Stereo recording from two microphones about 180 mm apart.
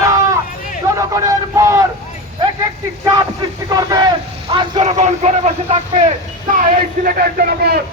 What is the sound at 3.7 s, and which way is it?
Speech, 20° right (ahead or behind).